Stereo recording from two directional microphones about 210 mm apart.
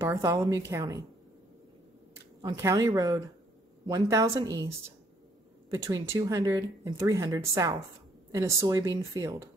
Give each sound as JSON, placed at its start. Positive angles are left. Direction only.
{"t": 0.0, "sound": "speech", "side_deg": -15}
{"t": 2.4, "sound": "speech", "side_deg": -15}